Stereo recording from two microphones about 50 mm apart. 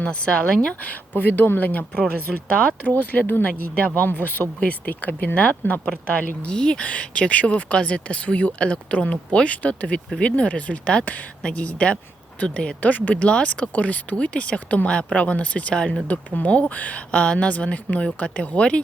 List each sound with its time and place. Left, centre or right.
0.0 s speech: left
0.3 s speech: centre
0.7 s speech: left
1.1 s speech: left
1.9 s speech: left
13.2 s speech: left